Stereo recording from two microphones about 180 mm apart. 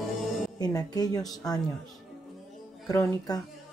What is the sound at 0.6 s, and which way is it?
Speech, 20° left (ahead or behind).